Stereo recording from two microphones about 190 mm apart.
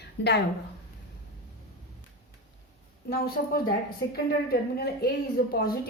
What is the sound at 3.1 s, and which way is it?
A woman's voice, 55° left (ahead or behind).